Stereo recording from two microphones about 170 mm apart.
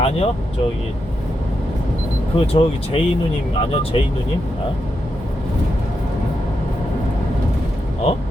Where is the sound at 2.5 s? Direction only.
35° left (ahead or behind).